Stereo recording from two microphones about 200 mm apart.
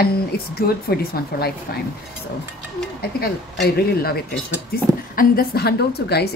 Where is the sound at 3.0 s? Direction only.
50° left (ahead or behind).